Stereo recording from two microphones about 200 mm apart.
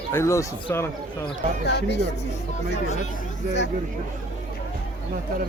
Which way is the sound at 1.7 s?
55° left (ahead or behind).